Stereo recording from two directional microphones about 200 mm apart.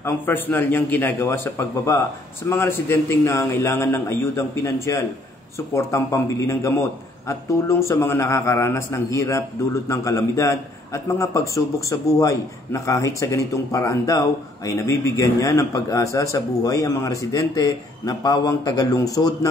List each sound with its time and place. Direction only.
0.0 s a man's voice: 10° left (ahead or behind)